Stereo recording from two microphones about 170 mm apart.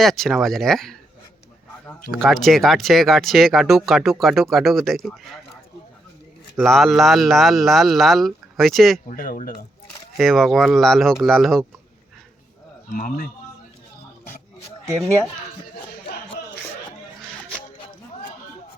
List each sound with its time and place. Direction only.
0.0 s speech: centre (ahead or behind)
2.0 s speech: centre (ahead or behind)
6.6 s speech: centre (ahead or behind)
9.0 s speech: 55° left (ahead or behind)
10.2 s speech: centre (ahead or behind)
12.9 s speech: 50° left (ahead or behind)